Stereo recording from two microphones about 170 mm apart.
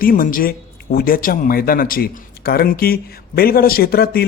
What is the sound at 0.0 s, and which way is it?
A man's voice, 55° left (ahead or behind).